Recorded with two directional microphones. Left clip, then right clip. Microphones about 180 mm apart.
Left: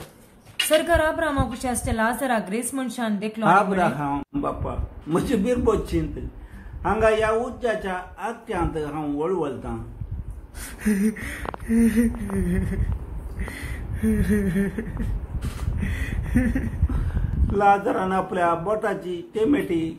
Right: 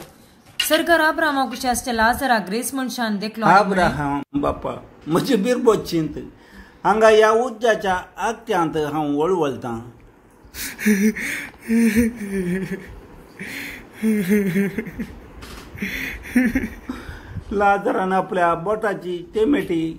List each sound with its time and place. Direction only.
0.7 s a woman's voice: 10° right (ahead or behind); by 9.8 s 40° right (ahead or behind)
10.8 s gasp: 15° right (ahead or behind)
12.4 s speech: centre (ahead or behind)
13.4 s a sound: 10° right (ahead or behind)
17.6 s a woman's voice: 25° right (ahead or behind)